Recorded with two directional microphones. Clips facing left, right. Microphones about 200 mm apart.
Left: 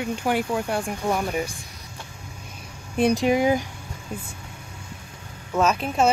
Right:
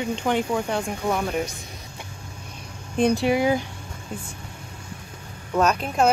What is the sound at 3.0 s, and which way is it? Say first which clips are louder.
Speech: even; 15° left (ahead or behind).